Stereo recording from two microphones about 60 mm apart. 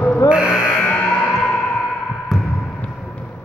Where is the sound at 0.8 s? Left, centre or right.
Left.